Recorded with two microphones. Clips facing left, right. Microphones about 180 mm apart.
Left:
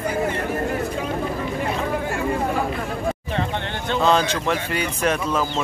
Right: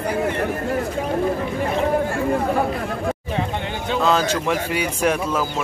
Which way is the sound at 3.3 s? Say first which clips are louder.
Right 1 dB; 10° right (ahead or behind).